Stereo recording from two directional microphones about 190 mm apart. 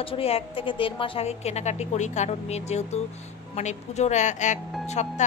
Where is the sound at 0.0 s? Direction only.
30° left (ahead or behind).